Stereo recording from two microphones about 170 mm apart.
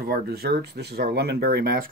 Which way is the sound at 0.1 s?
70° right (ahead or behind).